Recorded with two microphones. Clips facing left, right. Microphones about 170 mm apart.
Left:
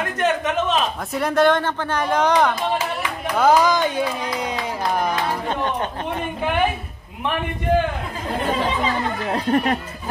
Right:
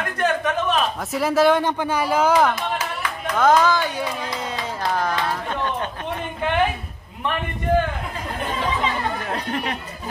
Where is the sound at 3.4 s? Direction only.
10° left (ahead or behind).